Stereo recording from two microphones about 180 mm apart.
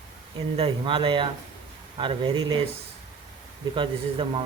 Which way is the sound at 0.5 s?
30° right (ahead or behind).